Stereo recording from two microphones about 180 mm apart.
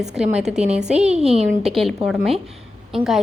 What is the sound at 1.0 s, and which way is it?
Speech, 35° right (ahead or behind).